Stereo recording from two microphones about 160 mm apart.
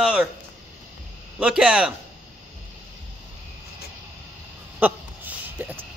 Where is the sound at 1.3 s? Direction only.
5° right (ahead or behind).